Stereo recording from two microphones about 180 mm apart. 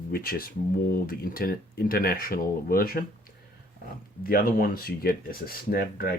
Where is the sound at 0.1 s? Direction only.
55° left (ahead or behind).